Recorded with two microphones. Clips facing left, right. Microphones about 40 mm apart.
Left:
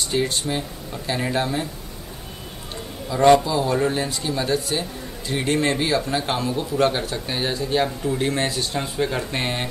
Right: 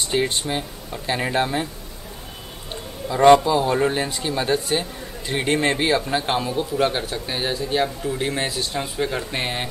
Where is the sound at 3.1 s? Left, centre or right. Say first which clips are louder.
Right 2 dB; centre.